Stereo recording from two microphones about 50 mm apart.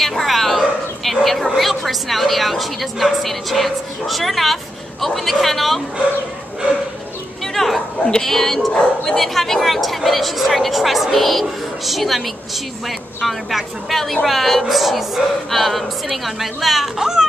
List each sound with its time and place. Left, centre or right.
0.0 s bow-wow: centre
1.6 s a woman's voice: centre
7.5 s a sound: centre
8.0 s speech: centre
8.3 s a woman's voice: centre